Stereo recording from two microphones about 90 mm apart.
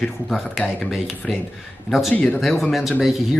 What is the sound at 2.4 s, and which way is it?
Speech, centre (ahead or behind).